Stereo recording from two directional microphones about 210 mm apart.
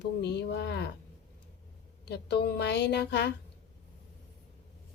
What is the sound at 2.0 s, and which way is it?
Speech, 50° left (ahead or behind).